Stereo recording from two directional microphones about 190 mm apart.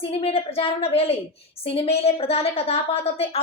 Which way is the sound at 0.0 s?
30° left (ahead or behind).